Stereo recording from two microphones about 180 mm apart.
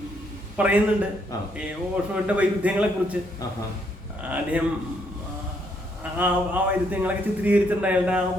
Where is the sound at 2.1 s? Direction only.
10° right (ahead or behind).